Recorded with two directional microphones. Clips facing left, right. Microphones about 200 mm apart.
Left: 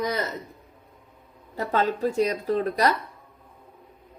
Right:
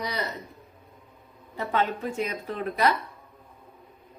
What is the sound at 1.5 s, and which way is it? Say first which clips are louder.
A woman's voice: left 3 dB; 40° left (ahead or behind).